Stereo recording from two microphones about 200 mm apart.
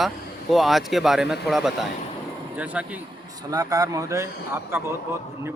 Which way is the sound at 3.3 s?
20° right (ahead or behind).